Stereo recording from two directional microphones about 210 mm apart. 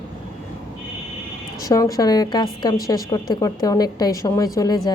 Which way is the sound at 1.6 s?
15° left (ahead or behind).